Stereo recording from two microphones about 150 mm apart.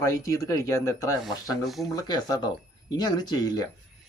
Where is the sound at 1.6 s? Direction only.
Centre (ahead or behind).